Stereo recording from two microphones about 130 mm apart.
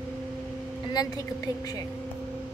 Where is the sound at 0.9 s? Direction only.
30° left (ahead or behind).